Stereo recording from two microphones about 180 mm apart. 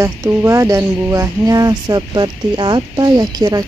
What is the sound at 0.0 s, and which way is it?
Speech, 15° right (ahead or behind).